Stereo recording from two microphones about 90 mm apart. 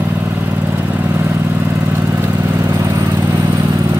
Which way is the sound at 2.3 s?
35° right (ahead or behind).